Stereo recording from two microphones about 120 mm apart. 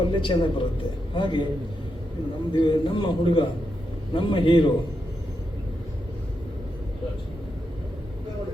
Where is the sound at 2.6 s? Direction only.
45° left (ahead or behind).